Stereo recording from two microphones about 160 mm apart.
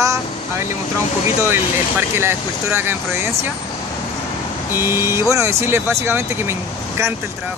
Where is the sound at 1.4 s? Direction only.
15° right (ahead or behind).